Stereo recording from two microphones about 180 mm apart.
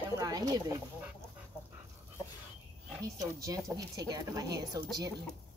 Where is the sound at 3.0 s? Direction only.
20° right (ahead or behind).